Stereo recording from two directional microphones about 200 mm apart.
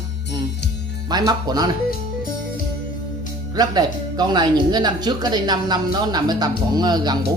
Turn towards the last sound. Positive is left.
turn(degrees=-20)  # may be behind; listen again after turning